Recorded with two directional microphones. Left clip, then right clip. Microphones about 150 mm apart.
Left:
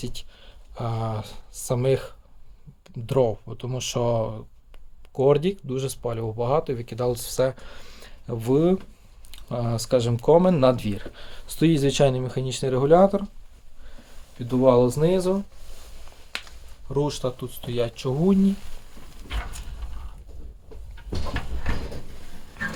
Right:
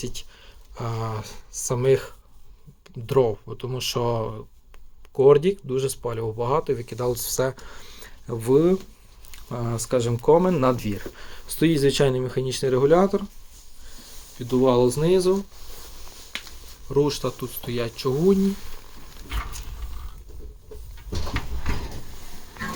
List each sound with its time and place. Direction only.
0.0 s speech: 30° left (ahead or behind)
7.9 s a sound: 30° left (ahead or behind)
9.3 s speech: 30° left (ahead or behind)
14.3 s speech: 30° left (ahead or behind)
16.9 s speech: 15° left (ahead or behind)